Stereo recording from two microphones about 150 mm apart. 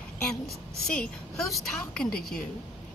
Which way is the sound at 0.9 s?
5° left (ahead or behind).